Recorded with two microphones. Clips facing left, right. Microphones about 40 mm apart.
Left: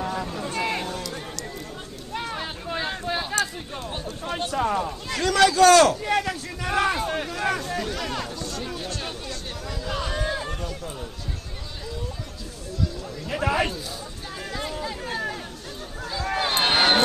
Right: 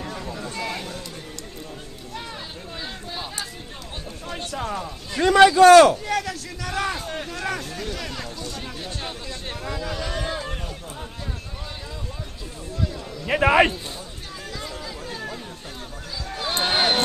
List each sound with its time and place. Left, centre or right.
0.0 s vehicle: centre
0.3 s vehicle: left
2.1 s vehicle: left
2.7 s a sound: left
4.5 s speech: centre
5.1 s a man's voice: right
6.0 s a sound: left
7.2 s speech: centre
8.4 s chatter: centre
10.1 s run: centre
13.3 s a man's voice: right
14.7 s a sound: left
16.2 s a sound: left